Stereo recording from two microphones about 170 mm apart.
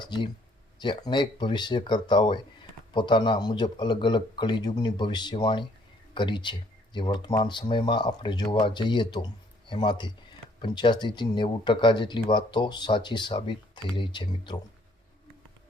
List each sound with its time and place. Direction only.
0.0 s speech: 25° left (ahead or behind)